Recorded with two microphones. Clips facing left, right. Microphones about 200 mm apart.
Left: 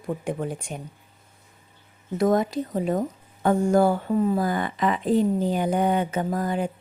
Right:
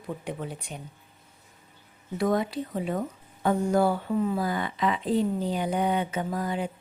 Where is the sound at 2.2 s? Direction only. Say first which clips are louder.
Left 4 dB; 45° left (ahead or behind).